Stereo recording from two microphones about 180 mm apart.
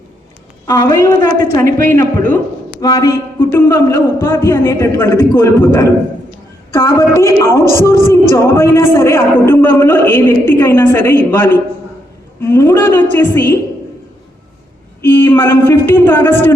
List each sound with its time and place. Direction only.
0.7 s a woman's voice: 20° left (ahead or behind)
15.0 s a man's voice: 10° left (ahead or behind)